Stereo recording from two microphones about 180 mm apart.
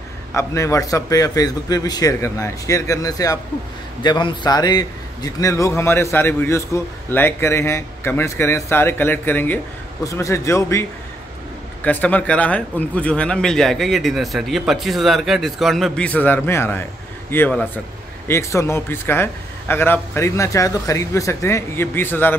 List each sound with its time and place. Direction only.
0.3 s a man's voice: 15° left (ahead or behind)